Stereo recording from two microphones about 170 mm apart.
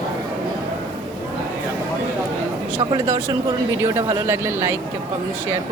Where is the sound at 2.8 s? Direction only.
25° right (ahead or behind).